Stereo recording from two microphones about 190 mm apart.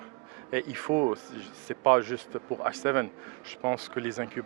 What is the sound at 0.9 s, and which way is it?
Speech, 30° right (ahead or behind).